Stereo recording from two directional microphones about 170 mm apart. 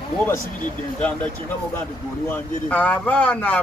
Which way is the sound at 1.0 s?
10° left (ahead or behind).